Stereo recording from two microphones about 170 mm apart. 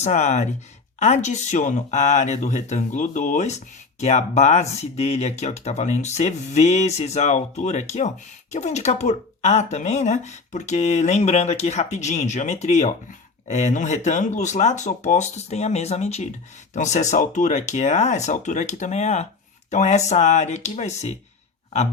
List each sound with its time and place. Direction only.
0.0 s speech: 40° left (ahead or behind)